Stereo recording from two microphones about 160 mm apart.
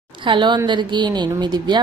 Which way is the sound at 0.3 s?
30° right (ahead or behind).